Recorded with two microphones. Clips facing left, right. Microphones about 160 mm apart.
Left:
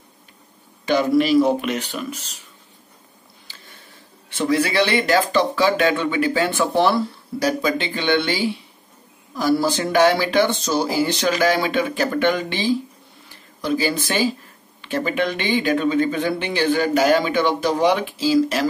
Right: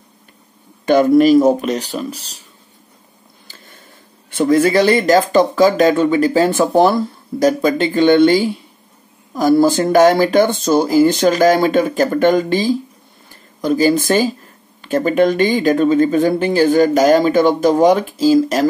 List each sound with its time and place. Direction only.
0.8 s speech: 50° right (ahead or behind)
3.4 s a sound: 45° right (ahead or behind)
4.3 s speech: 50° right (ahead or behind)